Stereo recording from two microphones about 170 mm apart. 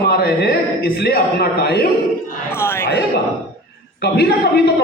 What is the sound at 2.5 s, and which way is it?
Chatter, 15° left (ahead or behind).